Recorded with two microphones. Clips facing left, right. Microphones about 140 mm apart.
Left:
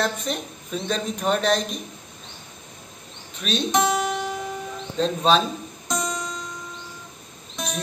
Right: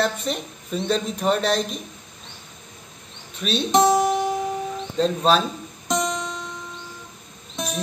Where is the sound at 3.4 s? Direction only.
5° right (ahead or behind).